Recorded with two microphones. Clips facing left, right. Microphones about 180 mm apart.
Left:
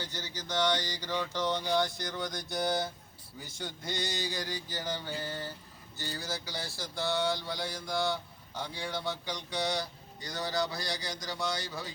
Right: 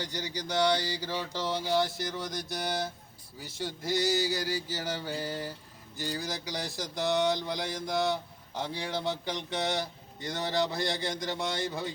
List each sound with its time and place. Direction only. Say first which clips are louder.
0.0 s mantra: right 5 dB; 15° right (ahead or behind)
1.5 s a sound: right 2 dB; 5° right (ahead or behind)
3.4 s mantra: right 5 dB; 5° right (ahead or behind); by 7.8 s 20° right (ahead or behind)
7.9 s speech: right 3 dB; 20° right (ahead or behind)